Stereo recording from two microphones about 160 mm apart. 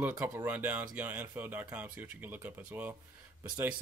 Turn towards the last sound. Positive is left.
turn(degrees=-5)  # may be behind; listen again after turning